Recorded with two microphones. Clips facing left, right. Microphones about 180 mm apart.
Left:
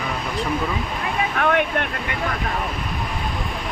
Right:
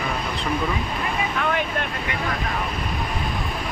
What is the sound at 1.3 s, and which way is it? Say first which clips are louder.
Speech: left 7 dB; 60° left (ahead or behind).